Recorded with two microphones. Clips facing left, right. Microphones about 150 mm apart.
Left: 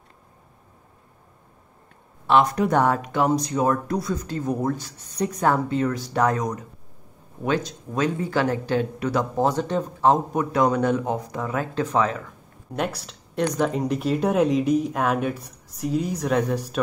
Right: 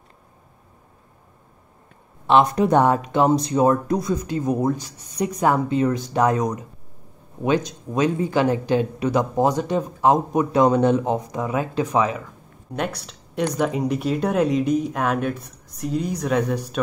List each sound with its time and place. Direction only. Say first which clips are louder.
2.2 s speech: right 2 dB; 25° right (ahead or behind)
12.7 s speech: even; centre (ahead or behind)